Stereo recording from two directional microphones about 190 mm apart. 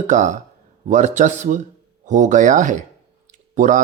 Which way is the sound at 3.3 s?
40° right (ahead or behind).